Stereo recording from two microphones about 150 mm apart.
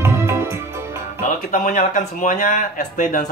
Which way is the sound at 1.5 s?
60° left (ahead or behind).